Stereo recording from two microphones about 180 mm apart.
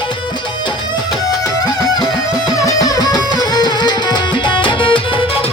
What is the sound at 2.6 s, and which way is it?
Music, 20° left (ahead or behind).